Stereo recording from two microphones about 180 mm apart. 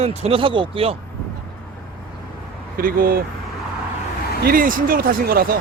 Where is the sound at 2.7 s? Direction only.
55° right (ahead or behind).